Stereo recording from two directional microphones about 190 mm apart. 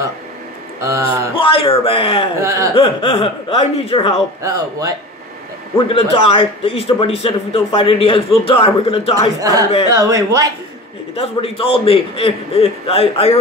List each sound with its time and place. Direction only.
0.7 s speech: 15° right (ahead or behind)
1.3 s a man's voice: 30° left (ahead or behind)
2.4 s speech: 15° right (ahead or behind)
2.7 s a man's voice: 30° left (ahead or behind)
4.4 s speech: 20° right (ahead or behind)
5.9 s a man's voice: 30° left (ahead or behind)
9.4 s speech: 15° right (ahead or behind)
11.1 s a man's voice: 30° left (ahead or behind)